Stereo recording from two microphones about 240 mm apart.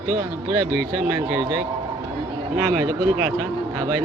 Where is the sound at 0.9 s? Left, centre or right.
Centre.